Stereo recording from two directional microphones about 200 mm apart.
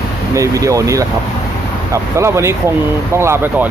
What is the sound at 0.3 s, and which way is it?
Speech, 15° right (ahead or behind).